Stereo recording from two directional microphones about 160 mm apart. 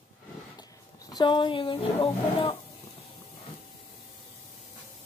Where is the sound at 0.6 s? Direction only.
25° left (ahead or behind).